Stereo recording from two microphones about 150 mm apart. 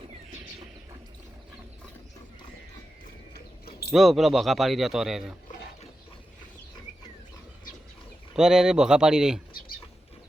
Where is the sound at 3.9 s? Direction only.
Centre (ahead or behind).